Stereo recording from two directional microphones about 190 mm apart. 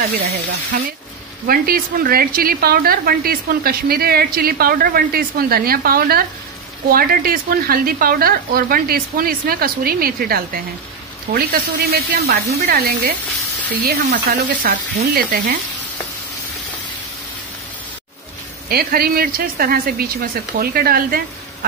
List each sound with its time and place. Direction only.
0.0 s a woman's voice: 45° right (ahead or behind)
18.7 s a woman's voice: 55° right (ahead or behind)